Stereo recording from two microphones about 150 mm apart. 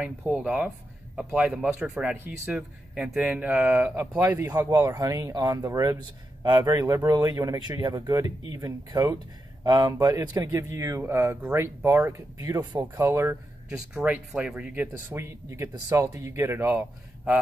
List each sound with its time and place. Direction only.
0.3 s speech: 5° right (ahead or behind)
13.9 s speech: 10° right (ahead or behind)